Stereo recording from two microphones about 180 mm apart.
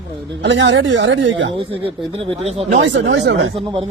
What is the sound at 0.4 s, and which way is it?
Speech, 80° right.